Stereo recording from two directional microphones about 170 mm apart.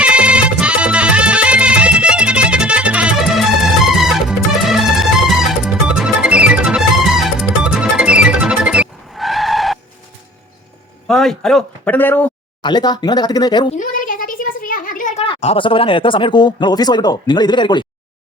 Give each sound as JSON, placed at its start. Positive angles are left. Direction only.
{"t": 0.0, "sound": "music", "side_deg": -5}
{"t": 11.1, "sound": "speech", "side_deg": 0}
{"t": 12.6, "sound": "speech", "side_deg": 25}
{"t": 13.7, "sound": "a sound", "side_deg": 55}
{"t": 15.2, "sound": "speech", "side_deg": 35}